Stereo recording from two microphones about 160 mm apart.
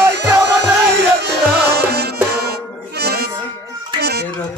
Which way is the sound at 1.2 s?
90° right.